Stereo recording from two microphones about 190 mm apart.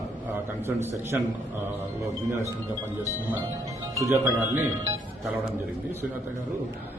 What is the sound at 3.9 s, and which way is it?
Speech, 15° right (ahead or behind).